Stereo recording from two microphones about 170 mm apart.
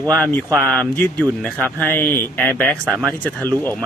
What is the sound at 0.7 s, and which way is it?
Speech, 10° left (ahead or behind).